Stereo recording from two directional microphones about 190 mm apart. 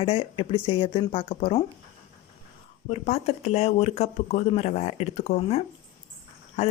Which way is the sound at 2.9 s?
35° left (ahead or behind).